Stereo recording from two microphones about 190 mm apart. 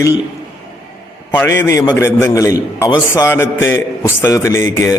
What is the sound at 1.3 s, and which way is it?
A man's voice, 10° left (ahead or behind).